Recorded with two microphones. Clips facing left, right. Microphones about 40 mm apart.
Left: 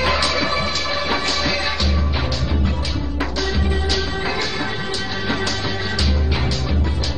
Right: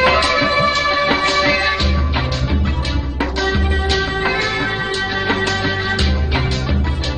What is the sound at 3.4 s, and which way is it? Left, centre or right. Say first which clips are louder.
Music: right 4 dB; right.